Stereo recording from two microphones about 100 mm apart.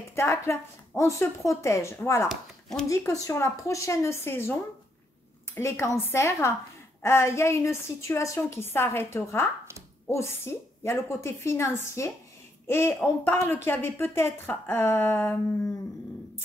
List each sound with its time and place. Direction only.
0.1 s a woman's voice: 25° left (ahead or behind)
2.2 s speech: 5° left (ahead or behind)
2.9 s a woman's voice: 30° left (ahead or behind)